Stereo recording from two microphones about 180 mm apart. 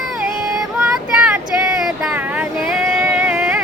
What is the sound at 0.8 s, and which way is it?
Vehicle, 5° right (ahead or behind).